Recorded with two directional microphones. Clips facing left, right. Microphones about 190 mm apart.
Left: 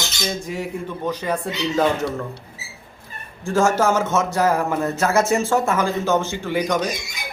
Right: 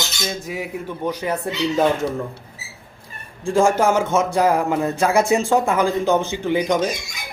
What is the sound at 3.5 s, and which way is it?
Speech, 15° right (ahead or behind).